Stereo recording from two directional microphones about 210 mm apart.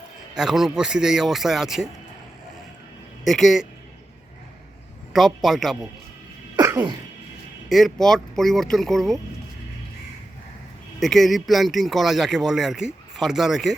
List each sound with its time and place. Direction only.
0.3 s speech: centre (ahead or behind)
3.2 s speech: centre (ahead or behind)
5.1 s speech: centre (ahead or behind)
6.6 s sneeze: 15° right (ahead or behind)
7.7 s speech: centre (ahead or behind)
11.0 s speech: centre (ahead or behind)